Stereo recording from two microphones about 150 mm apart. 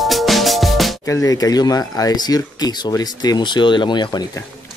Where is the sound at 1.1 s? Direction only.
20° left (ahead or behind).